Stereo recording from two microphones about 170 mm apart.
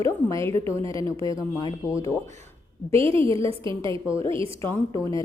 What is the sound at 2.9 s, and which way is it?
A woman's voice, 35° right (ahead or behind).